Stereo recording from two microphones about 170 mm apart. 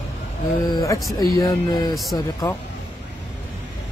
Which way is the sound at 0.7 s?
20° left (ahead or behind).